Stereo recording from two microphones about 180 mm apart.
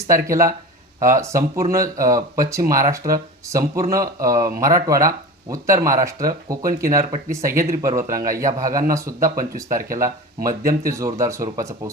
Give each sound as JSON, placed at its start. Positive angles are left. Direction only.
{"t": 0.1, "sound": "speech", "side_deg": -15}
{"t": 9.2, "sound": "speech", "side_deg": -50}
{"t": 10.0, "sound": "speech", "side_deg": -15}